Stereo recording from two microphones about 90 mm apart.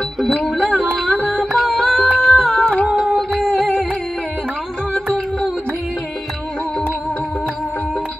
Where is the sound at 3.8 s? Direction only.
5° left (ahead or behind).